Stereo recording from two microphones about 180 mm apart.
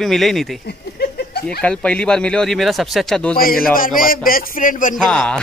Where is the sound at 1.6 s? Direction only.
5° left (ahead or behind).